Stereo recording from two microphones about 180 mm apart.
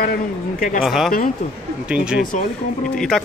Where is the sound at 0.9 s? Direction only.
Centre (ahead or behind).